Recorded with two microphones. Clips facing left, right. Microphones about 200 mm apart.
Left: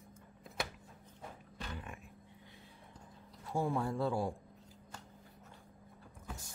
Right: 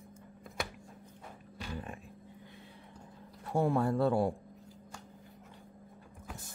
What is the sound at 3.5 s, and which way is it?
Speech, 65° right (ahead or behind).